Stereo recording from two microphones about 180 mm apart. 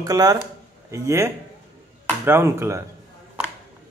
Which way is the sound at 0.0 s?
20° right (ahead or behind).